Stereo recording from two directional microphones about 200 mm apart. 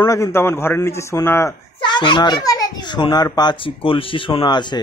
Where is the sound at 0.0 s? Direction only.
15° left (ahead or behind).